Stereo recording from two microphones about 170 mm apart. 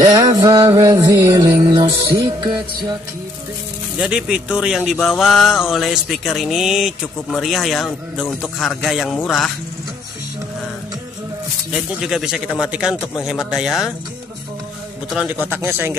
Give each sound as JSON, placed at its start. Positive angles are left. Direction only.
{"t": 0.0, "sound": "music", "side_deg": -25}
{"t": 1.6, "sound": "music", "side_deg": -35}
{"t": 4.0, "sound": "speech", "side_deg": -5}
{"t": 11.7, "sound": "speech", "side_deg": -5}
{"t": 15.0, "sound": "speech", "side_deg": -5}